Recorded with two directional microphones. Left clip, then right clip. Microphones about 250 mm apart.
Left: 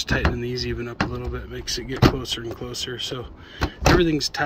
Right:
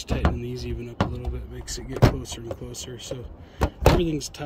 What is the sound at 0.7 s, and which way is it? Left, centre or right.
Speech, left.